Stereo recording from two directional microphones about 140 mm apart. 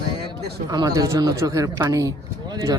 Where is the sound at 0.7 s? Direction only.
25° right (ahead or behind).